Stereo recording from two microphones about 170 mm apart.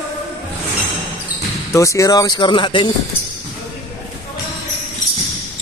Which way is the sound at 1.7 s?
20° left (ahead or behind).